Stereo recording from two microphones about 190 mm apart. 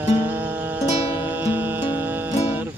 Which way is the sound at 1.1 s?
10° right (ahead or behind).